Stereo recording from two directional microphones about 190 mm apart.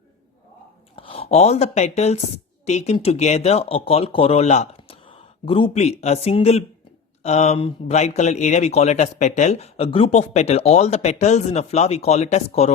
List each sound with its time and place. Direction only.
0.9 s speech: 30° left (ahead or behind)